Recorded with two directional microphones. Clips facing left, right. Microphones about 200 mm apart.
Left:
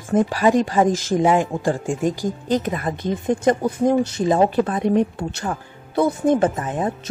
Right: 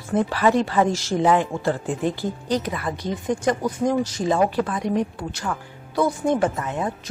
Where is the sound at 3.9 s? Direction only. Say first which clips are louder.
Left 5 dB; 60° left (ahead or behind).